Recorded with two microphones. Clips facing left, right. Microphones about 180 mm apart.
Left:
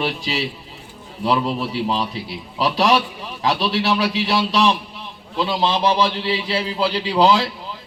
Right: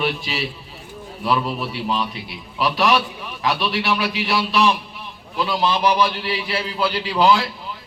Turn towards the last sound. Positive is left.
turn(degrees=25)  # may be behind; listen again after turning